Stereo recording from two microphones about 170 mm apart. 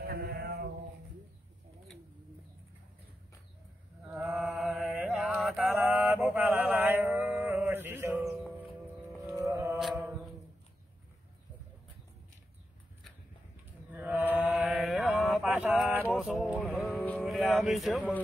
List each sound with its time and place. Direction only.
0.0 s mantra: 65° right (ahead or behind)
4.1 s mantra: 5° right (ahead or behind)
9.2 s music: 15° right (ahead or behind)
9.8 s mantra: 5° right (ahead or behind)
13.9 s mantra: 10° right (ahead or behind)
17.0 s music: 10° left (ahead or behind)
17.3 s a sound: centre (ahead or behind)